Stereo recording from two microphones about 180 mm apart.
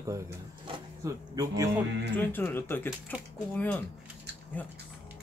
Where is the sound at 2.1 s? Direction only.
10° left (ahead or behind).